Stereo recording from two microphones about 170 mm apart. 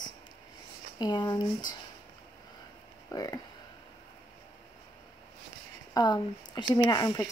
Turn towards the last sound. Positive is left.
turn(degrees=20)  # may be behind; listen again after turning